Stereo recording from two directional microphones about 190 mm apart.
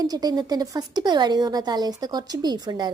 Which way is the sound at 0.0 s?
20° right (ahead or behind).